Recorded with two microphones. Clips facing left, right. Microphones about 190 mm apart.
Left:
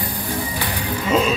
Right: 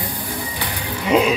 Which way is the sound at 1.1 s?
15° right (ahead or behind).